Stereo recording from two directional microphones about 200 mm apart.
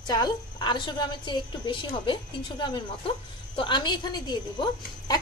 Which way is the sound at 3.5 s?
25° left (ahead or behind).